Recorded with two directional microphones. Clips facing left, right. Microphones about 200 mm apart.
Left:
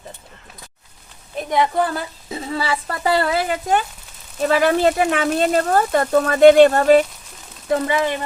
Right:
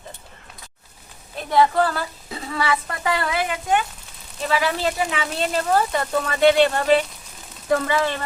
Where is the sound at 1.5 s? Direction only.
20° left (ahead or behind); by 3.8 s 40° left (ahead or behind).